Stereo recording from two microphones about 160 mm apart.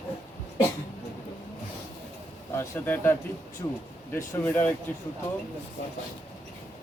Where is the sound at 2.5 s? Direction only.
15° left (ahead or behind).